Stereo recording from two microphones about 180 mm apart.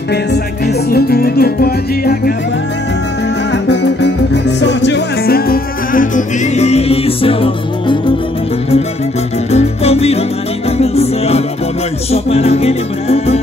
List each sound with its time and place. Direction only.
0.8 s music: 60° left (ahead or behind)
3.5 s music: 75° left (ahead or behind); by 8.0 s 30° left (ahead or behind)
9.5 s music: 35° left (ahead or behind)